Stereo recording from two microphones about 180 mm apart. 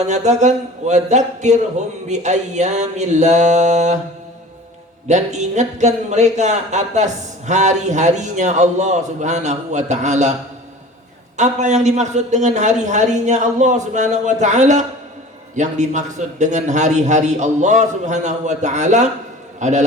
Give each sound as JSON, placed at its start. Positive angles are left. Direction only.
{"t": 0.0, "sound": "a man's voice", "side_deg": -40}
{"t": 5.0, "sound": "a man's voice", "side_deg": -40}
{"t": 11.3, "sound": "a man's voice", "side_deg": -40}